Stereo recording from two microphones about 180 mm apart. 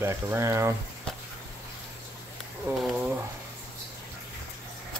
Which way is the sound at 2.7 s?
5° right (ahead or behind).